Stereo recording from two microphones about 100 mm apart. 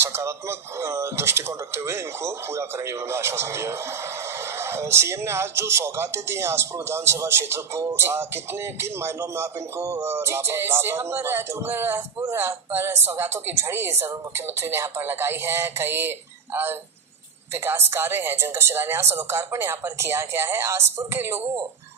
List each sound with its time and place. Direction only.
0.0 s speech: 25° right (ahead or behind)